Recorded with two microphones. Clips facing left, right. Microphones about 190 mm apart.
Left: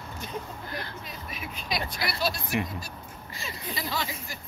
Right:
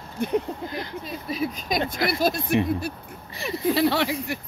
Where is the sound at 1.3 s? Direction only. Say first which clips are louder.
Right 9 dB; 35° right (ahead or behind).